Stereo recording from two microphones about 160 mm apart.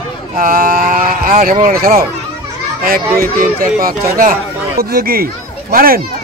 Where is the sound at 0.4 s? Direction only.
60° right (ahead or behind).